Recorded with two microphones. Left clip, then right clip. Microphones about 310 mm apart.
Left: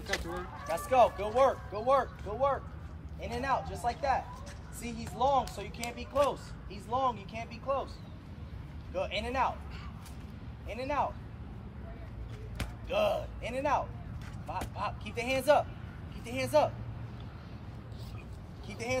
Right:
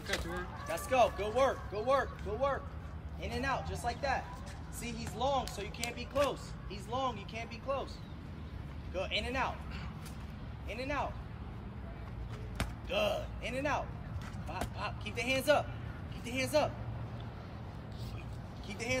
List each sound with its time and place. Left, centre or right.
0.1 s a sound: left
0.7 s speech: centre
8.9 s speech: centre
10.7 s speech: centre
12.9 s speech: centre
18.7 s speech: centre